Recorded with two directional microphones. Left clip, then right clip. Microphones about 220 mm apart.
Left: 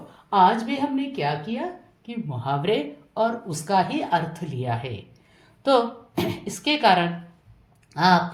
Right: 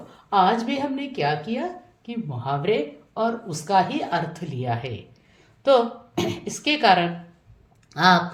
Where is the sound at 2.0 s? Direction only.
Centre (ahead or behind).